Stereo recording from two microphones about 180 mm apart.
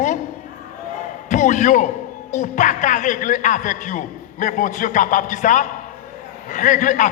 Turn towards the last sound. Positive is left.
turn(degrees=45)  # may be behind; listen again after turning